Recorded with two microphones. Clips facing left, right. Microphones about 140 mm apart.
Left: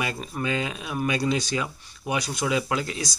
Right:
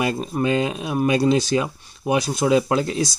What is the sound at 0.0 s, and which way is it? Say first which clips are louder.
Speech: right 8 dB; 30° right (ahead or behind).